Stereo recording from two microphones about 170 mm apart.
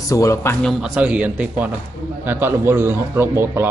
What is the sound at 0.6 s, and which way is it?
A man's voice, 5° right (ahead or behind).